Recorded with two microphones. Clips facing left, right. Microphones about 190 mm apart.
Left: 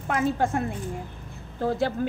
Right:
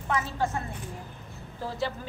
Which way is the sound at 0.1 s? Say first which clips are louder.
Left 5 dB; 55° left (ahead or behind).